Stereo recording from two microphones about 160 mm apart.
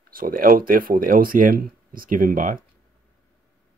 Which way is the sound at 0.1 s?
60° right (ahead or behind).